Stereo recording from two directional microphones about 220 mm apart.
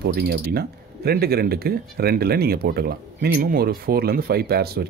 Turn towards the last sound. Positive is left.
turn(degrees=-45)  # may be behind; listen again after turning